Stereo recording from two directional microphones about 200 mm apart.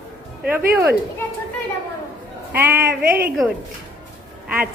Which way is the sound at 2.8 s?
50° right (ahead or behind).